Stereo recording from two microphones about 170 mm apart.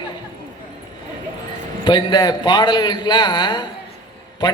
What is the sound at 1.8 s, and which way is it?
Speech, 25° left (ahead or behind).